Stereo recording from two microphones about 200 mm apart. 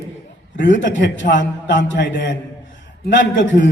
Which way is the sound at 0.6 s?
65° left (ahead or behind).